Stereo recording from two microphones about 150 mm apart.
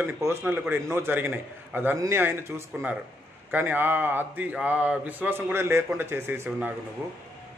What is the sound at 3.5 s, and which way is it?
Speech, 15° right (ahead or behind).